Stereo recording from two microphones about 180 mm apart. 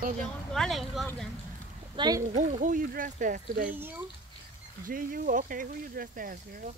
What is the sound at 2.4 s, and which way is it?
Speech, 40° right (ahead or behind).